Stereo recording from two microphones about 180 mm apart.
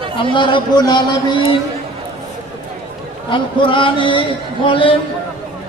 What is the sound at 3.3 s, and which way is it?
A man's voice, 25° left (ahead or behind).